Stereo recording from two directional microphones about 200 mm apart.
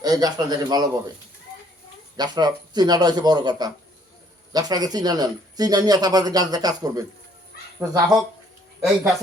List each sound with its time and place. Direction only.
0.0 s speech: 20° right (ahead or behind)
2.1 s speech: 20° right (ahead or behind)